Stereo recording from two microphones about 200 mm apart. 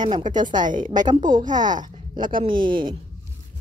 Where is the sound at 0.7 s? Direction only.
40° right (ahead or behind).